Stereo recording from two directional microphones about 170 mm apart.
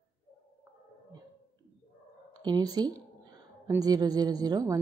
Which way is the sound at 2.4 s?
25° right (ahead or behind).